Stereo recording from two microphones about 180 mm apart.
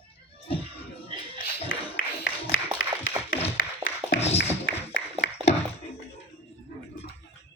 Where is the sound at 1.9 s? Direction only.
90° left.